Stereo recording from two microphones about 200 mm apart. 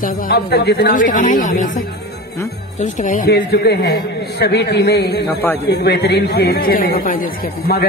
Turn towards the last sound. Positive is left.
turn(degrees=50)  # may be behind; listen again after turning